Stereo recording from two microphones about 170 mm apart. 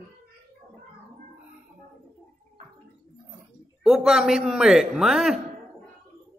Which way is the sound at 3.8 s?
5° right (ahead or behind).